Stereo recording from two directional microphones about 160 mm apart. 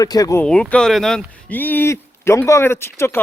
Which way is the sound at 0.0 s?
20° left (ahead or behind).